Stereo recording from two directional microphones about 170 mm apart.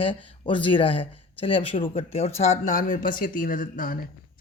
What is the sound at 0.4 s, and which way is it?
Speech, 30° left (ahead or behind).